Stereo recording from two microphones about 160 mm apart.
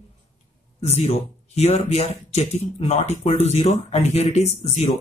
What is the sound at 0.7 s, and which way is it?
Speech, 40° left (ahead or behind).